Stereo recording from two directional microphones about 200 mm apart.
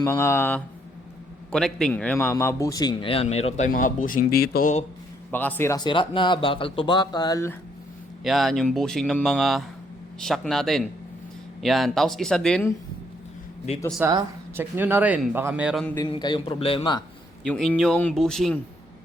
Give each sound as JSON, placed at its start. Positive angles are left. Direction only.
{"t": 0.0, "sound": "speech", "side_deg": 15}
{"t": 3.7, "sound": "speech", "side_deg": 45}
{"t": 5.3, "sound": "speech", "side_deg": 10}
{"t": 8.2, "sound": "speech", "side_deg": 0}
{"t": 14.0, "sound": "speech", "side_deg": -10}
{"t": 16.0, "sound": "speech", "side_deg": 20}
{"t": 17.4, "sound": "speech", "side_deg": 5}